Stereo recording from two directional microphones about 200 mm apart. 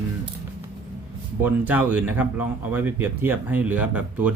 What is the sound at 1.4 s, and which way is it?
Speech, 10° right (ahead or behind).